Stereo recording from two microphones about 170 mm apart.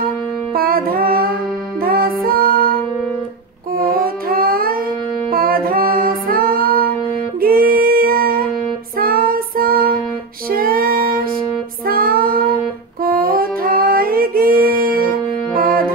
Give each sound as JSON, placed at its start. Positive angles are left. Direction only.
{"t": 0.6, "sound": "music", "side_deg": -60}
{"t": 3.7, "sound": "music", "side_deg": -60}
{"t": 8.9, "sound": "child singing", "side_deg": -60}
{"t": 10.5, "sound": "music", "side_deg": -60}
{"t": 11.9, "sound": "child singing", "side_deg": -60}
{"t": 13.0, "sound": "music", "side_deg": -60}